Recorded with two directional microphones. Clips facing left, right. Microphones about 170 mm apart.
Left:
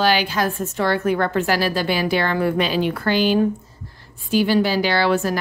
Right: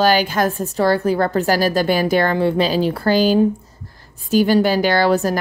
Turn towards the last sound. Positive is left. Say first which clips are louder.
# right 3 dB
turn(degrees=-40)  # may be behind; listen again after turning